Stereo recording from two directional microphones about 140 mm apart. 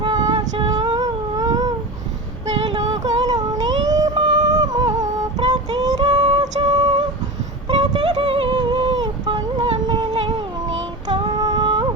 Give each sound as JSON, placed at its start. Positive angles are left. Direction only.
{"t": 0.0, "sound": "female singing", "side_deg": -35}
{"t": 0.7, "sound": "a sound", "side_deg": -30}
{"t": 11.1, "sound": "music", "side_deg": -30}